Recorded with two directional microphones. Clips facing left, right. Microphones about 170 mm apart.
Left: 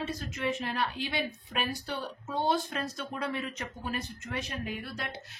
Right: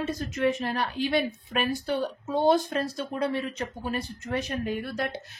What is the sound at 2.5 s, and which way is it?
Speech, 35° right (ahead or behind).